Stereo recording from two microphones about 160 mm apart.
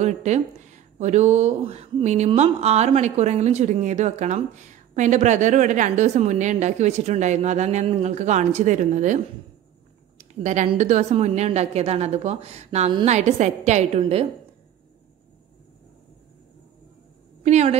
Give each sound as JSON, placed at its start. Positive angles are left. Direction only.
{"t": 0.0, "sound": "speech", "side_deg": -45}
{"t": 10.1, "sound": "a sound", "side_deg": -50}
{"t": 10.8, "sound": "speech", "side_deg": -45}
{"t": 17.4, "sound": "a woman's voice", "side_deg": -45}